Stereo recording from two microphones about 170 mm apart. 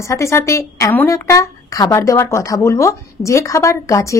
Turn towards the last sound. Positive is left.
turn(degrees=20)  # may be behind; listen again after turning